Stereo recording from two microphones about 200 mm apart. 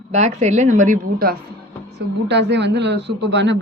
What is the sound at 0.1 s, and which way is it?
A woman's voice, 35° right (ahead or behind).